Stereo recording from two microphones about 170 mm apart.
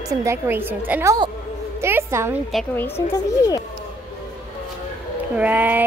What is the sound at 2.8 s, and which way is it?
Speech, 15° left (ahead or behind).